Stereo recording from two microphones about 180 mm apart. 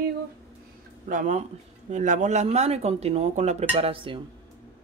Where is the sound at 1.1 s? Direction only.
40° right (ahead or behind).